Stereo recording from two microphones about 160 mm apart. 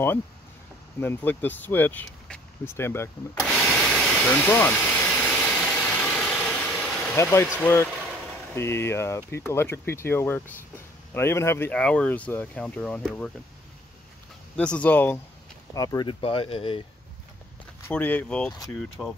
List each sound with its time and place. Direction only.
1.0 s speech: 10° left (ahead or behind)
3.4 s a sound: centre (ahead or behind)
5.4 s vehicle: 5° left (ahead or behind)
7.5 s speech: 15° left (ahead or behind)
14.6 s speech: 10° left (ahead or behind)
15.7 s speech: 20° left (ahead or behind)
17.8 s speech: 10° left (ahead or behind)
19.0 s speech: 5° right (ahead or behind)